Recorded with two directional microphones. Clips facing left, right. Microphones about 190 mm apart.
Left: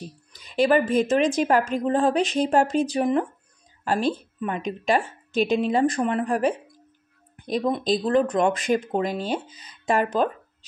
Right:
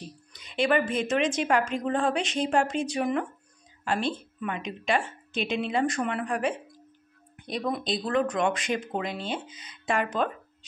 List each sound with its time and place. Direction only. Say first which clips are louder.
0.5 s a woman's voice: left 5 dB; 35° left (ahead or behind)
7.8 s a woman's voice: left 5 dB; 40° left (ahead or behind)